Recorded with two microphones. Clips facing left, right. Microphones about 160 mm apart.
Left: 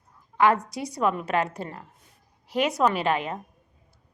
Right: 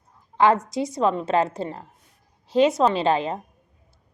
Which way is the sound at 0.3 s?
25° right (ahead or behind).